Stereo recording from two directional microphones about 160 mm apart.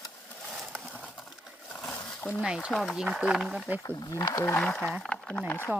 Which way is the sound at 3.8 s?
25° left (ahead or behind).